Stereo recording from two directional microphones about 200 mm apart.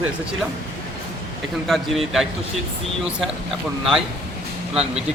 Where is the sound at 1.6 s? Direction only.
Centre (ahead or behind).